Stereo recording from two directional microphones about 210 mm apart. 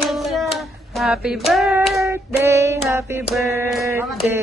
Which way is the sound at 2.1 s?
15° right (ahead or behind).